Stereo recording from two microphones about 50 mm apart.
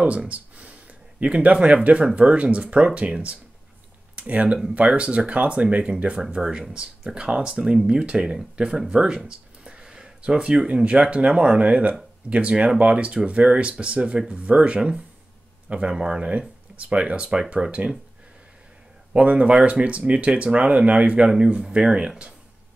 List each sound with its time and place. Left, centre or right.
0.0 s speech: centre
0.3 s a sound: right
1.2 s speech: right
19.1 s speech: right